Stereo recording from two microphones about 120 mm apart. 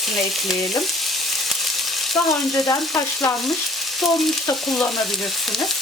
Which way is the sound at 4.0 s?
Centre (ahead or behind).